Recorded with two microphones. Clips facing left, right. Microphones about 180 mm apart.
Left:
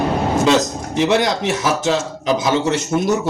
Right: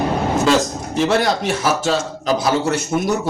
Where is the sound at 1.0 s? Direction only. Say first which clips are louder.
Left 1 dB; 20° left (ahead or behind).